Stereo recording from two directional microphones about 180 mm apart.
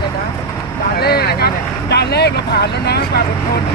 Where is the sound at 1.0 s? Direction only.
60° left (ahead or behind).